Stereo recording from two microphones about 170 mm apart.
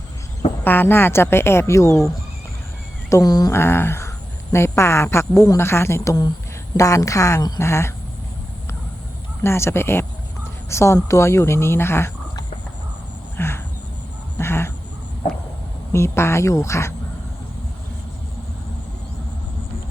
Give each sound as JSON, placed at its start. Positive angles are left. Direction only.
{"t": 0.6, "sound": "speech", "side_deg": 10}
{"t": 3.1, "sound": "a woman's voice", "side_deg": 20}
{"t": 9.4, "sound": "speech", "side_deg": 15}
{"t": 13.3, "sound": "cricket", "side_deg": 15}
{"t": 14.3, "sound": "duck", "side_deg": 15}
{"t": 15.9, "sound": "speech", "side_deg": 15}